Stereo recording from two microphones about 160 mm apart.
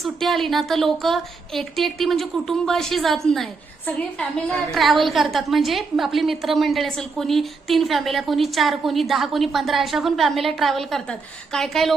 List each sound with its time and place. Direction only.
0.0 s a woman's voice: centre (ahead or behind)